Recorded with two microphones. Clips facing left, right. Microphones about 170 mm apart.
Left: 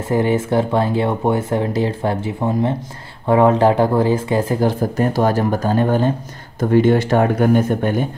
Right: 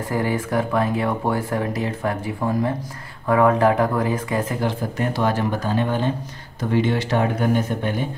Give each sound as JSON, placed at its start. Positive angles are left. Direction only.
{"t": 0.1, "sound": "speech", "side_deg": 25}